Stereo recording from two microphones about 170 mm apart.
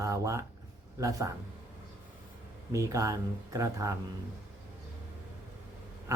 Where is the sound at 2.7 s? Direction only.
20° right (ahead or behind).